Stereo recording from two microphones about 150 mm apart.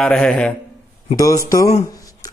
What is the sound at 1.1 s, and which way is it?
Speech, 20° left (ahead or behind).